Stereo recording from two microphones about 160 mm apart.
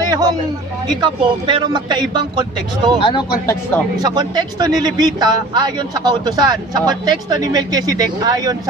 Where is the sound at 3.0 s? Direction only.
30° left (ahead or behind).